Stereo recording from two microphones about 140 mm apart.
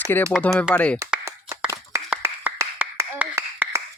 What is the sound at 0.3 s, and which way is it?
Speech, centre (ahead or behind).